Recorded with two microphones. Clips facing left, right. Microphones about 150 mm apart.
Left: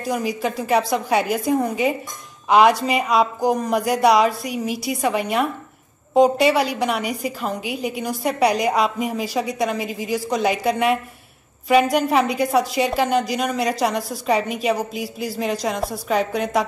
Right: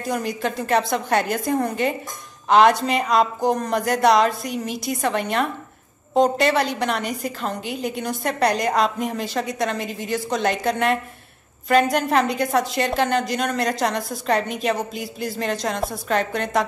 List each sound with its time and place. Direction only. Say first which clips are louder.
0.0 s a woman's voice: left 2 dB; 5° left (ahead or behind)